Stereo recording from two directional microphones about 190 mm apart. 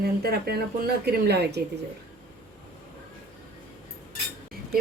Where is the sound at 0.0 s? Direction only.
55° right (ahead or behind).